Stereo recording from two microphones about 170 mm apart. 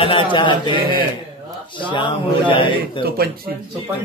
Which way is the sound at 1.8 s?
30° left (ahead or behind).